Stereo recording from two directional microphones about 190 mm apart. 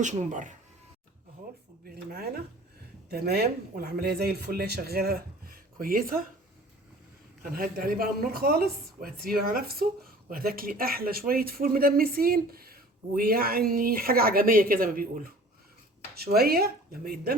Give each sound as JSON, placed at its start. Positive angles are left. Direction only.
{"t": 0.0, "sound": "speech", "side_deg": -40}
{"t": 1.8, "sound": "a man's voice", "side_deg": -50}
{"t": 7.5, "sound": "a man's voice", "side_deg": -50}